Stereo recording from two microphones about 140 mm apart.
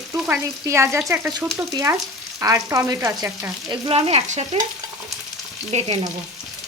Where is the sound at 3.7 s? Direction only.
40° right (ahead or behind).